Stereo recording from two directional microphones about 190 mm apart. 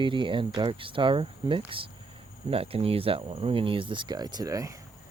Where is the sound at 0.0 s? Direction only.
25° right (ahead or behind).